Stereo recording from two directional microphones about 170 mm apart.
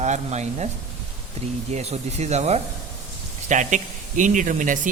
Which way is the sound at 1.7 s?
40° right (ahead or behind).